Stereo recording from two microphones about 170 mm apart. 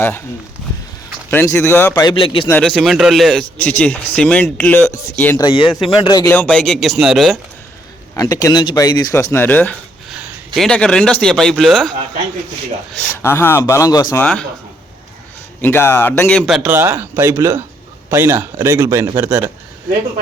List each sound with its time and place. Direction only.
1.3 s speech: 15° left (ahead or behind)
1.9 s a man's voice: 25° left (ahead or behind)
2.5 s speech: 5° left (ahead or behind)
5.4 s speech: 30° left (ahead or behind)
6.3 s speech: 5° left (ahead or behind)
8.1 s speech: 20° left (ahead or behind)
10.1 s a man's voice: 5° right (ahead or behind)
13.2 s speech: 15° left (ahead or behind)
14.2 s speech: 5° left (ahead or behind)
15.6 s speech: 10° left (ahead or behind)
16.5 s a man's voice: 5° right (ahead or behind)